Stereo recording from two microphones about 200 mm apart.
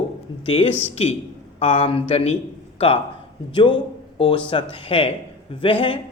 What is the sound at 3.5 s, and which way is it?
A man's voice, 25° left (ahead or behind).